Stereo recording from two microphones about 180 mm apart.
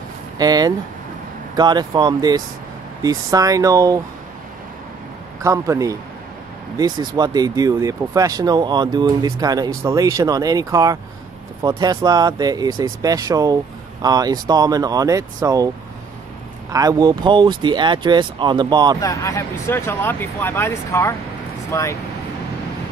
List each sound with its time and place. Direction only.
0.4 s speech: 20° right (ahead or behind)
5.4 s speech: 15° right (ahead or behind)
16.7 s speech: 20° right (ahead or behind)
18.9 s speech: 20° left (ahead or behind)